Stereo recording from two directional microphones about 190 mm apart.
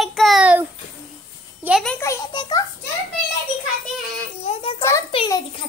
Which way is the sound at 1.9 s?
20° left (ahead or behind).